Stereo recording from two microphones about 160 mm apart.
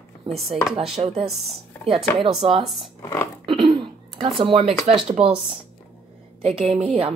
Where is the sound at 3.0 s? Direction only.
15° left (ahead or behind).